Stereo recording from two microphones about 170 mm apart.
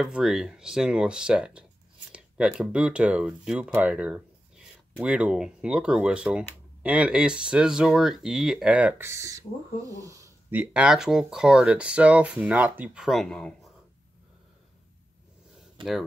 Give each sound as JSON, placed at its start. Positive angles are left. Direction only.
{"t": 0.0, "sound": "speech", "side_deg": -5}
{"t": 15.8, "sound": "speech", "side_deg": -30}